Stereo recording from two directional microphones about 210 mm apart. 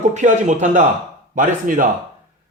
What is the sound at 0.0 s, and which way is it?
A man's voice, 35° right (ahead or behind).